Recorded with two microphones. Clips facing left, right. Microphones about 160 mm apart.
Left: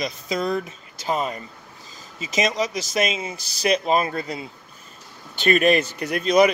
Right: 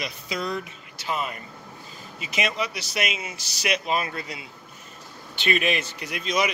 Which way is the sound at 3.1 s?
30° left (ahead or behind).